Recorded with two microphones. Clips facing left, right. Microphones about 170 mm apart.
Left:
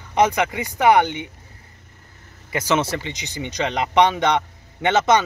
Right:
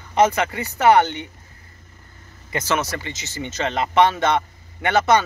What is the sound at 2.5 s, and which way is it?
A man's voice, 15° left (ahead or behind).